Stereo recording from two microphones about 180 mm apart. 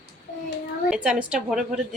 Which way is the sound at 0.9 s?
5° right (ahead or behind).